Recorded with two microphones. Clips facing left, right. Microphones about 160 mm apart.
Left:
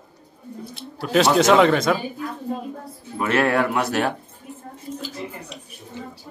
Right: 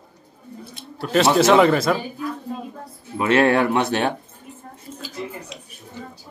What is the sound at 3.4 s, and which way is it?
Speech, 25° right (ahead or behind).